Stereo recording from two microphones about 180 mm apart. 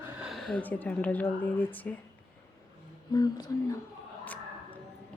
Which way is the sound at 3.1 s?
20° left (ahead or behind).